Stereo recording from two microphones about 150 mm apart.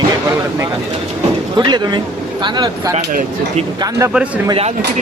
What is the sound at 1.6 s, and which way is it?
Speech, 30° right (ahead or behind).